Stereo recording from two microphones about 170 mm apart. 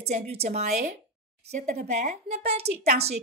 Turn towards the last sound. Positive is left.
turn(degrees=-40)  # may be behind; listen again after turning